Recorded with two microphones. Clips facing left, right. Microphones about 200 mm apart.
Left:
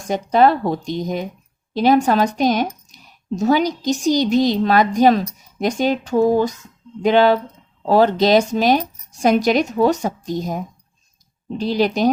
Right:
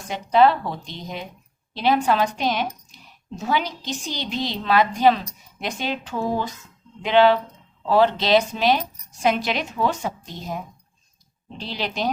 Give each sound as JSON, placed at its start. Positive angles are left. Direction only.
{"t": 0.1, "sound": "a woman's voice", "side_deg": 45}